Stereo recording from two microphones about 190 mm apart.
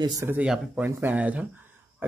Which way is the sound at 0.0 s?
15° right (ahead or behind).